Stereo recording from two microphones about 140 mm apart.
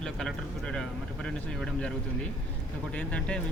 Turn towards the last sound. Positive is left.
turn(degrees=10)  # may be behind; listen again after turning